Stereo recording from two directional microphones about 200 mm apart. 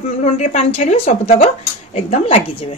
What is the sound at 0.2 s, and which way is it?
A woman's voice, 35° left (ahead or behind).